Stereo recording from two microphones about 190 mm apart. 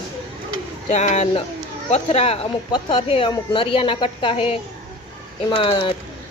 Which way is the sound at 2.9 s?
35° left (ahead or behind).